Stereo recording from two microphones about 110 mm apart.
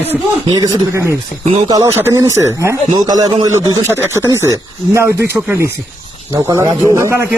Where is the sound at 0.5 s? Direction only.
35° right (ahead or behind).